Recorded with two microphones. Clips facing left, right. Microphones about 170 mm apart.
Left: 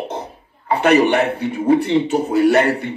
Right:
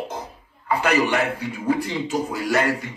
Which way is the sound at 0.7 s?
30° left (ahead or behind).